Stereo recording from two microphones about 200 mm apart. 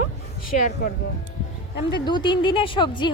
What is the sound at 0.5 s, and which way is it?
Speech, 40° left (ahead or behind).